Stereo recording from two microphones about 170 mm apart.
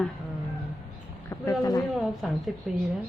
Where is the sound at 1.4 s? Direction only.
20° left (ahead or behind).